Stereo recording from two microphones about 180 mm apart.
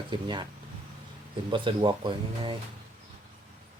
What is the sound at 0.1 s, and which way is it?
Speech, 25° right (ahead or behind).